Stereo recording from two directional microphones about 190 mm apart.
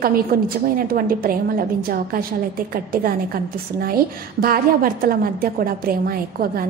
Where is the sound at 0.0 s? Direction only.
50° right (ahead or behind).